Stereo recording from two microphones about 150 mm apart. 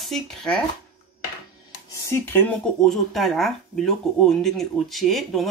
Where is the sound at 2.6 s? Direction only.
5° left (ahead or behind).